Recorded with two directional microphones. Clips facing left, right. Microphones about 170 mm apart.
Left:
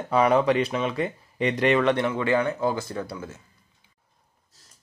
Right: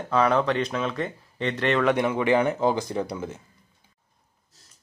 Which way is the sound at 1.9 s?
15° right (ahead or behind).